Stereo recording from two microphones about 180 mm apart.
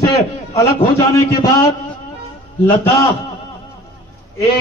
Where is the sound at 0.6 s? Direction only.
15° left (ahead or behind).